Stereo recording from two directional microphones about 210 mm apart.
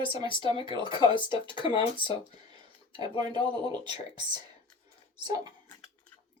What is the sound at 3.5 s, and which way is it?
Speech, 20° right (ahead or behind).